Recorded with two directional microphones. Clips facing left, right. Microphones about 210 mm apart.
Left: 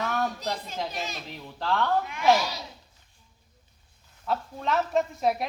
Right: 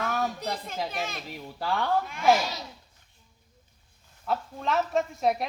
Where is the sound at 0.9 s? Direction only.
55° right (ahead or behind).